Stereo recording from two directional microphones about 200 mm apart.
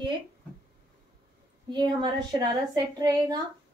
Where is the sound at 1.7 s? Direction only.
20° right (ahead or behind).